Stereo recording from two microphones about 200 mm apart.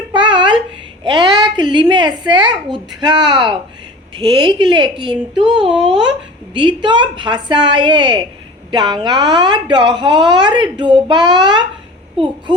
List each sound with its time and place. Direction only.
0.1 s a sound: 25° right (ahead or behind)
1.0 s a woman's voice: 25° right (ahead or behind)
5.5 s speech: 5° right (ahead or behind)
6.1 s speech: 25° right (ahead or behind)